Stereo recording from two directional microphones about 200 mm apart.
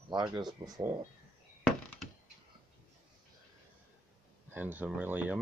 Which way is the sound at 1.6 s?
Centre (ahead or behind).